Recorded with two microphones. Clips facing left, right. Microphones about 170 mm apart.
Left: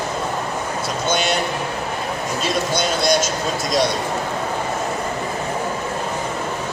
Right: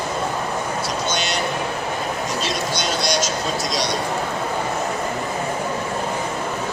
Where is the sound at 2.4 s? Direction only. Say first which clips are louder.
Left 3 dB; 50° left (ahead or behind).